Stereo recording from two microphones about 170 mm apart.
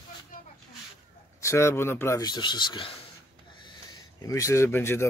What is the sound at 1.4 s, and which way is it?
Speech, 15° left (ahead or behind).